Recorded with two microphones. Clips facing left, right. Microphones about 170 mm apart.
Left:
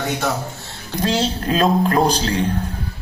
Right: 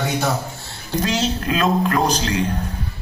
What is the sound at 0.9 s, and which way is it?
A man's voice, 35° left (ahead or behind).